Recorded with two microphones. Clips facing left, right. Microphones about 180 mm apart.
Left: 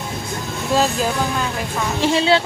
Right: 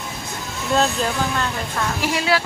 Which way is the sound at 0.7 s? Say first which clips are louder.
Left 1 dB; 5° left (ahead or behind).